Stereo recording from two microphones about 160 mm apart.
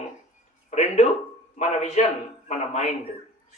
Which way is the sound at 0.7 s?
45° left (ahead or behind).